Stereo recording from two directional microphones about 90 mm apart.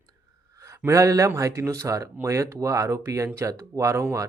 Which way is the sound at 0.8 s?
35° right (ahead or behind).